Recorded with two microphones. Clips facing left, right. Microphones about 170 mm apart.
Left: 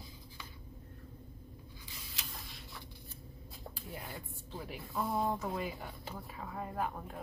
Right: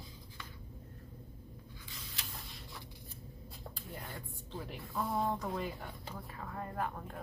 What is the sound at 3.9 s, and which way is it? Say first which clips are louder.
Speech: even; 10° left (ahead or behind).